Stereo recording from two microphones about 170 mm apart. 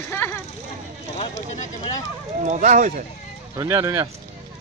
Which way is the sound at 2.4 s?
45° right (ahead or behind).